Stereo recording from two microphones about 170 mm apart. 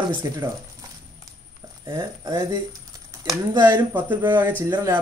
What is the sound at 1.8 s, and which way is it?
Speech, 20° right (ahead or behind).